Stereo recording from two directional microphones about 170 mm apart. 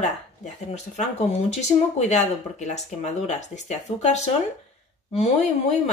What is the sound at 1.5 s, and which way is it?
A woman's voice, 40° left (ahead or behind).